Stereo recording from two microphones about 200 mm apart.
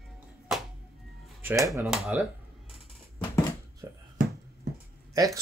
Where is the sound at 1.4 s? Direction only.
15° right (ahead or behind).